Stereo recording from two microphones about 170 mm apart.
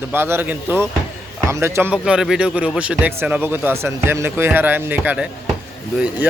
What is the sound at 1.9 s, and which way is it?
Speech, 5° right (ahead or behind).